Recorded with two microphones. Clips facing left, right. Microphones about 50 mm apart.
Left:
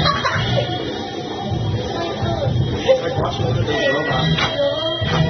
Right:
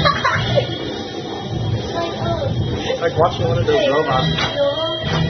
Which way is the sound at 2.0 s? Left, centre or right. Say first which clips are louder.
Right 2 dB; centre.